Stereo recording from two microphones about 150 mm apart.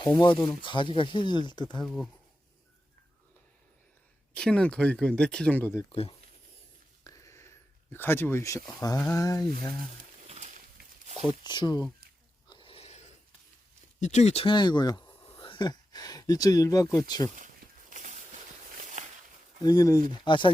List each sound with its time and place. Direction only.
0.0 s speech: 30° left (ahead or behind)
1.8 s speech: centre (ahead or behind)
4.4 s speech: 5° left (ahead or behind)
5.9 s speech: 40° left (ahead or behind)
7.0 s a sound: 20° left (ahead or behind)
7.9 s speech: 15° left (ahead or behind)
10.2 s pig: 50° right (ahead or behind)
11.2 s speech: 35° left (ahead or behind)
12.5 s a sound: 35° left (ahead or behind)
14.0 s speech: 50° left (ahead or behind); by 17.2 s 25° left (ahead or behind)
17.9 s a sound: 55° right (ahead or behind)
19.6 s speech: 25° left (ahead or behind)